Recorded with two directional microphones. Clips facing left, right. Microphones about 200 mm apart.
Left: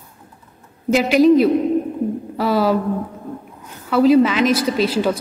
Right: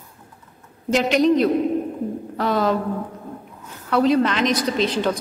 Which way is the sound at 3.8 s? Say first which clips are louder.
Left 5 dB; 5° left (ahead or behind).